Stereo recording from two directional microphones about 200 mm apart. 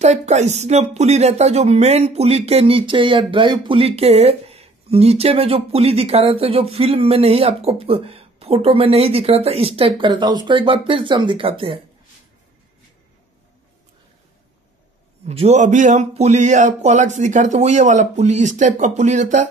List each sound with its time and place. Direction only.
0.0 s a woman's voice: 35° right (ahead or behind)
15.2 s speech: 30° right (ahead or behind)